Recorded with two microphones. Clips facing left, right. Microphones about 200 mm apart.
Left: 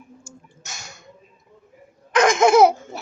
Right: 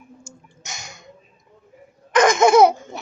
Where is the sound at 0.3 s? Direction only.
15° right (ahead or behind).